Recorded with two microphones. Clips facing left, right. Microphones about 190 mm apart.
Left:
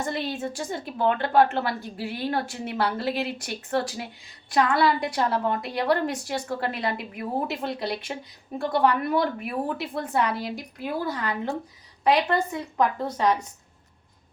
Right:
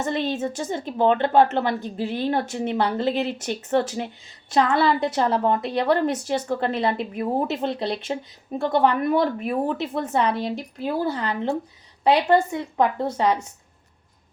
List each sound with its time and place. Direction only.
0.3 s a woman's voice: 25° right (ahead or behind)